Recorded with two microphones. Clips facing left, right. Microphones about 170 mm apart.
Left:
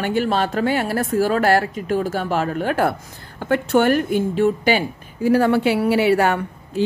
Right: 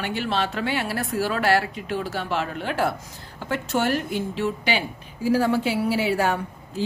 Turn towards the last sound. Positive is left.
turn(degrees=65)  # may be behind; listen again after turning